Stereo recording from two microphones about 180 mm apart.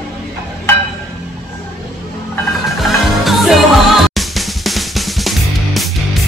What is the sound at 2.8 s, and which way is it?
Music, centre (ahead or behind).